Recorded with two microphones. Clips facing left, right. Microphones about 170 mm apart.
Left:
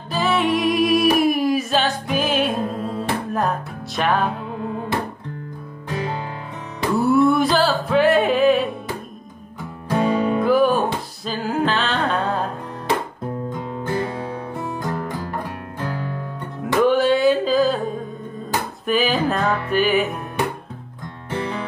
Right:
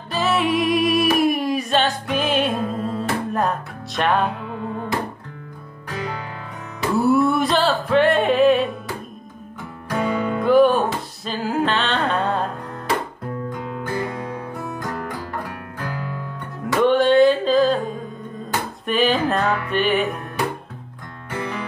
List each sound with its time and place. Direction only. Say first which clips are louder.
0.1 s music: left 1 dB; centre (ahead or behind)
5.9 s music: left 2 dB; 30° left (ahead or behind)
7.0 s music: left 1 dB; centre (ahead or behind)
9.8 s music: left 3 dB; 30° left (ahead or behind)
10.4 s music: right 4 dB; centre (ahead or behind)
13.5 s music: left 2 dB; 25° left (ahead or behind)
16.6 s music: even; 5° left (ahead or behind)
18.9 s music: even; centre (ahead or behind)
21.3 s music: left 2 dB; 30° left (ahead or behind)